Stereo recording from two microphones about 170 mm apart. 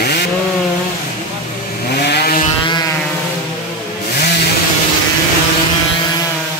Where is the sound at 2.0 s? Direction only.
75° left (ahead or behind).